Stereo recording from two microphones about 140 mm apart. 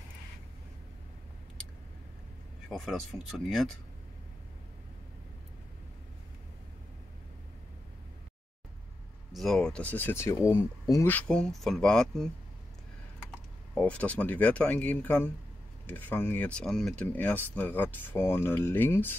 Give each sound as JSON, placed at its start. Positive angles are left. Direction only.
{"t": 2.7, "sound": "speech", "side_deg": 0}
{"t": 9.3, "sound": "speech", "side_deg": 0}
{"t": 11.1, "sound": "speech", "side_deg": 10}
{"t": 13.7, "sound": "speech", "side_deg": 10}